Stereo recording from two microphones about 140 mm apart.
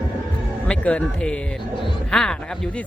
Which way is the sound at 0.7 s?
10° left (ahead or behind).